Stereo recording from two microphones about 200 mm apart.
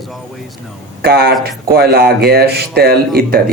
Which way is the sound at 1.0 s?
50° right (ahead or behind).